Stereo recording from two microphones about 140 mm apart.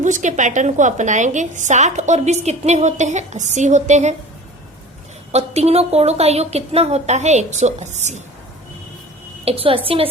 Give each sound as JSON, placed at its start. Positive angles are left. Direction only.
{"t": 0.0, "sound": "a woman's voice", "side_deg": -60}
{"t": 5.3, "sound": "speech", "side_deg": -50}
{"t": 9.4, "sound": "a woman's voice", "side_deg": -45}